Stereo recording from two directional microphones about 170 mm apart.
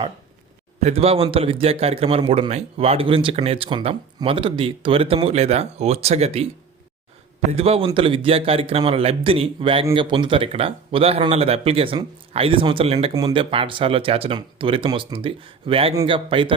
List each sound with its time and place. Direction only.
0.8 s a man's voice: 40° right (ahead or behind)
7.5 s a man's voice: 35° right (ahead or behind)